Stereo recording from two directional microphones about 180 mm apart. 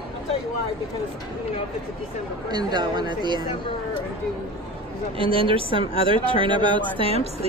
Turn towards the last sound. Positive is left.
turn(degrees=-35)  # may be behind; listen again after turning